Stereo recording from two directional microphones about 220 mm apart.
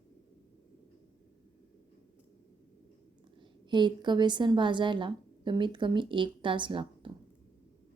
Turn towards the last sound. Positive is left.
turn(degrees=-20)  # may be behind; listen again after turning